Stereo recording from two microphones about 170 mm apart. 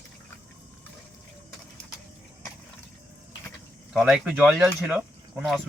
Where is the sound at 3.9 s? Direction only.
5° right (ahead or behind).